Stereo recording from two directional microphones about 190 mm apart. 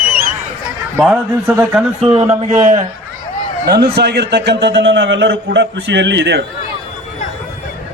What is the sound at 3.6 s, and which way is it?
A man's voice, 55° right (ahead or behind).